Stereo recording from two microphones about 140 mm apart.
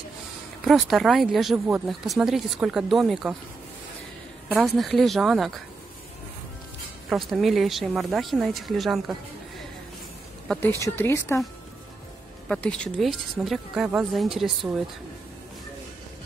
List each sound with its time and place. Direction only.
0.7 s speech: centre (ahead or behind)
4.7 s speech: centre (ahead or behind)
7.1 s speech: centre (ahead or behind)
10.8 s speech: 15° left (ahead or behind)
12.4 s speech: 5° left (ahead or behind)